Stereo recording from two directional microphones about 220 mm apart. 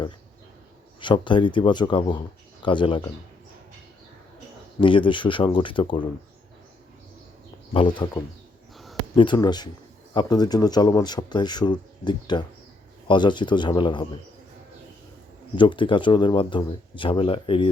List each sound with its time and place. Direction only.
0.9 s speech: 20° left (ahead or behind)
4.8 s speech: 20° left (ahead or behind)
7.7 s speech: 25° left (ahead or behind)
8.7 s a sound: centre (ahead or behind)
9.1 s speech: 20° left (ahead or behind)
15.5 s speech: 20° left (ahead or behind)